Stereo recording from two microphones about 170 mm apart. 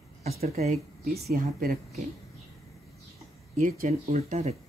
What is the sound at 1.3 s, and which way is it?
Speech, 55° right (ahead or behind).